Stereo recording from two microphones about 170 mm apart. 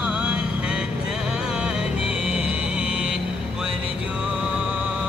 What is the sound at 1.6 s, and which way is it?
Music, 5° right (ahead or behind).